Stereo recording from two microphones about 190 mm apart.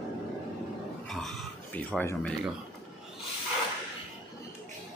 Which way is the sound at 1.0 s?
Centre (ahead or behind).